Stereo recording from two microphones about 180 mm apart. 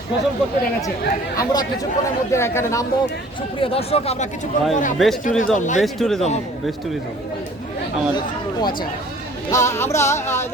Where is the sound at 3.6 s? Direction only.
35° left (ahead or behind).